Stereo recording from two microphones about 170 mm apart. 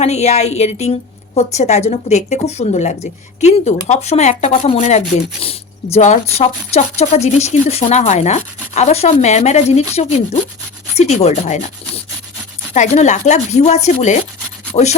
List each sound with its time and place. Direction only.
0.0 s a woman's voice: 40° left (ahead or behind)